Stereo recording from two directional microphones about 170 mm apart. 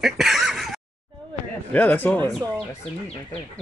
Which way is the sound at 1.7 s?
10° left (ahead or behind).